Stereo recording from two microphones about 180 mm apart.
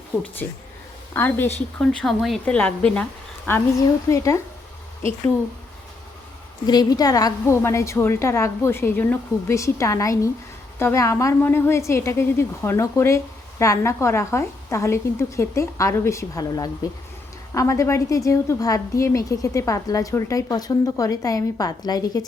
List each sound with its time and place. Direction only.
0.4 s a woman's voice: 10° left (ahead or behind)
6.7 s a woman's voice: 20° left (ahead or behind)